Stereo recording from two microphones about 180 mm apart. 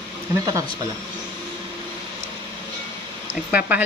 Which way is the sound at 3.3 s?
10° right (ahead or behind).